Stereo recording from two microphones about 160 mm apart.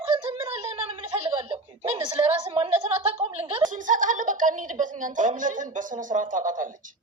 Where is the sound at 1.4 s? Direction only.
35° right (ahead or behind).